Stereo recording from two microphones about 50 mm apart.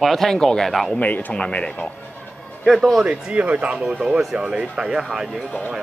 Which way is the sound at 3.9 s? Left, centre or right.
Centre.